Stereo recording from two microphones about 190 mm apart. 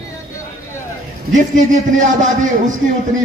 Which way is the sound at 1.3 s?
40° right (ahead or behind).